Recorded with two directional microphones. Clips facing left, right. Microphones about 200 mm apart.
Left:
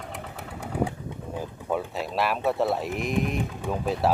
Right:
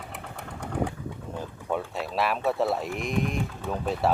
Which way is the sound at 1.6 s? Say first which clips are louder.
Left 1 dB; centre (ahead or behind).